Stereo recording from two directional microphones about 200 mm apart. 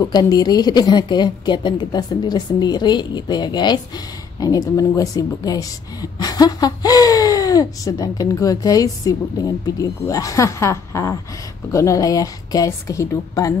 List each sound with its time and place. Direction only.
0.0 s a woman's voice: 20° left (ahead or behind)